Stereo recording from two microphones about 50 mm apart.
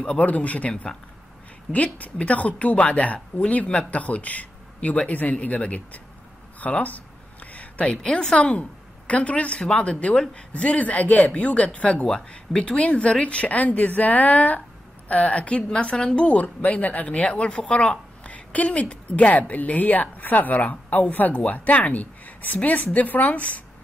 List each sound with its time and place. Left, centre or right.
0.2 s a woman's voice: left
7.5 s a sound: left
7.9 s a woman's voice: centre
8.4 s a woman's voice: left
16.3 s speech: left